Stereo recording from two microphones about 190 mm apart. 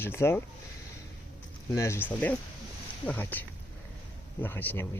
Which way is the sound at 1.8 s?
15° left (ahead or behind).